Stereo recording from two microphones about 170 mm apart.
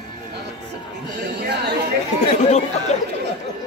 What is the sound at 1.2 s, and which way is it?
Chatter, 80° right.